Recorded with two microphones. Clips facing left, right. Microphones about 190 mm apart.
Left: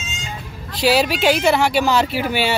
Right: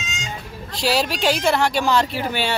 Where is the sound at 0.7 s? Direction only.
Centre (ahead or behind).